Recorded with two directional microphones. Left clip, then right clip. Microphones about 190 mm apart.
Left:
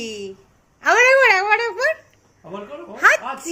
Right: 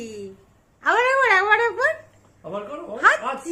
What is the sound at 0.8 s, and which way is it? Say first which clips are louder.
Speech: left 5 dB; 10° left (ahead or behind).